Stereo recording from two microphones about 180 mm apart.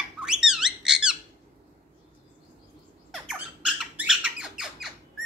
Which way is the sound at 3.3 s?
5° right (ahead or behind).